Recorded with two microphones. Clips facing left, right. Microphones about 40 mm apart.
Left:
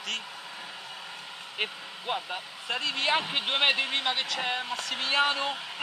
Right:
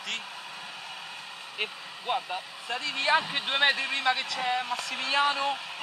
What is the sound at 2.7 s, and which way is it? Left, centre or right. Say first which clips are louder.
Speech: right 1 dB; left.